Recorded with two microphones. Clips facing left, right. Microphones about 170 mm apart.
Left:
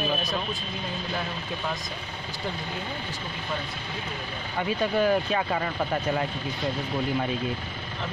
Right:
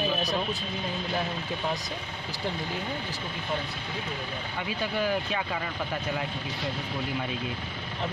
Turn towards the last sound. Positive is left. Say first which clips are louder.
# left 5 dB
turn(degrees=45)  # may be behind; listen again after turning